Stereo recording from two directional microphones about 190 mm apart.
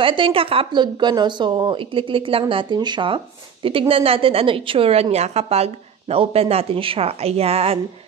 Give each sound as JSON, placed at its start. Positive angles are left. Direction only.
{"t": 0.0, "sound": "a woman's voice", "side_deg": -25}